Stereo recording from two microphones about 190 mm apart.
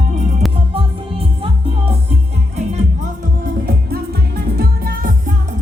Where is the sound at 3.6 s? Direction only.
55° right (ahead or behind).